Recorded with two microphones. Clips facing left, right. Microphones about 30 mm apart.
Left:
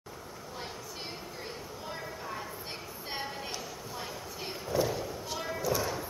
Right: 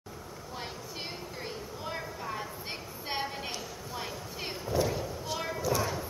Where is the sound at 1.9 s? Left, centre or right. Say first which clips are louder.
Right 3 dB; centre.